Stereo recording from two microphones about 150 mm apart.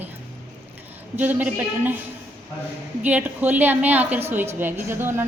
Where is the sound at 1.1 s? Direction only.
10° right (ahead or behind).